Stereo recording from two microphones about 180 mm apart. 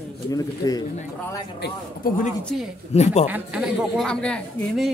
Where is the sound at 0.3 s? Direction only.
20° left (ahead or behind).